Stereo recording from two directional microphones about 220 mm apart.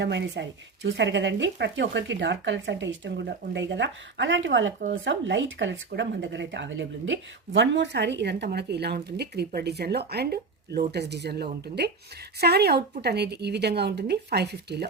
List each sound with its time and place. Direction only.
0.0 s speech: 50° right (ahead or behind)